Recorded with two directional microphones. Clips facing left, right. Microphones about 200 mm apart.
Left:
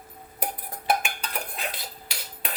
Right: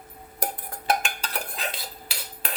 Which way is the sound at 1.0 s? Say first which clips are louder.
Right 1 dB; centre (ahead or behind).